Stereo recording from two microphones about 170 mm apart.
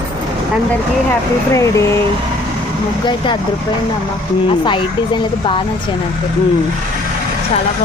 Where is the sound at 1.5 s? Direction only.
15° left (ahead or behind).